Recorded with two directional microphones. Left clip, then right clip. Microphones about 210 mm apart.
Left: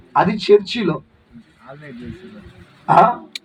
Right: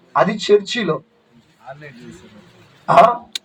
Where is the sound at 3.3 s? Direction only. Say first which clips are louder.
Right 4 dB; 25° right (ahead or behind).